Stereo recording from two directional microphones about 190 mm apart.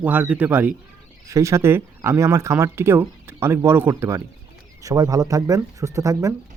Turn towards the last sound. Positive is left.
turn(degrees=-15)  # may be behind; listen again after turning